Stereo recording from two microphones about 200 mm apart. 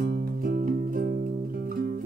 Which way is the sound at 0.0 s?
50° right (ahead or behind).